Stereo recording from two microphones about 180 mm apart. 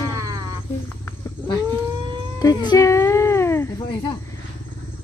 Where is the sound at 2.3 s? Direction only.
20° left (ahead or behind).